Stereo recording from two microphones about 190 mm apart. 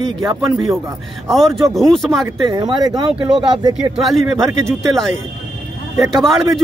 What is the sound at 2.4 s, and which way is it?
Speech, 20° right (ahead or behind).